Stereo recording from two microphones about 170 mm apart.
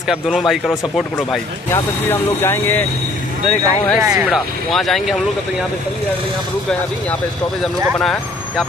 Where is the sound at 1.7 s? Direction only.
15° left (ahead or behind).